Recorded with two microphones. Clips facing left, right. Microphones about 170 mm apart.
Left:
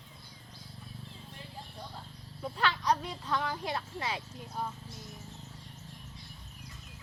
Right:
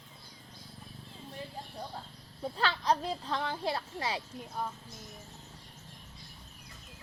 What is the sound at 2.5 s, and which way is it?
Speech, 30° right (ahead or behind).